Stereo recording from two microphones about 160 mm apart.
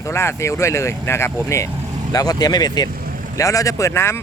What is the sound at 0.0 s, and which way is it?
Speech, 15° left (ahead or behind).